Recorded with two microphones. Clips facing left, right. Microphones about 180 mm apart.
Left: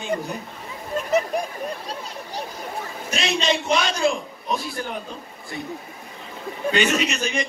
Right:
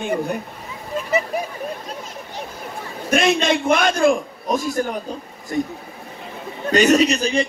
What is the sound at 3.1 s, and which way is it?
A man's voice, 55° right (ahead or behind).